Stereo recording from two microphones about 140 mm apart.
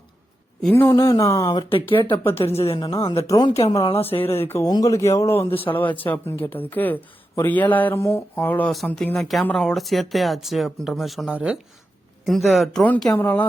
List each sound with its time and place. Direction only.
0.7 s speech: 20° left (ahead or behind)
2.1 s speech: 45° left (ahead or behind)
3.2 s speech: 25° left (ahead or behind)
3.9 s speech: 45° left (ahead or behind)
4.2 s speech: 15° left (ahead or behind)